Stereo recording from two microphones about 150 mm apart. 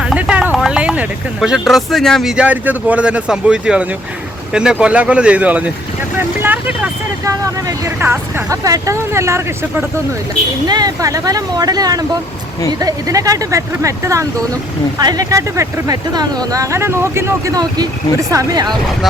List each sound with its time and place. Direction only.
0.0 s speech: 5° right (ahead or behind); by 18.8 s 25° right (ahead or behind)